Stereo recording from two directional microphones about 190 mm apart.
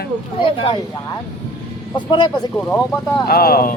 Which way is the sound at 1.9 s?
25° left (ahead or behind).